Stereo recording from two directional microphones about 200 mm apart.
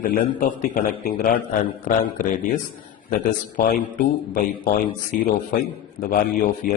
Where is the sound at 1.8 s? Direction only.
45° left (ahead or behind).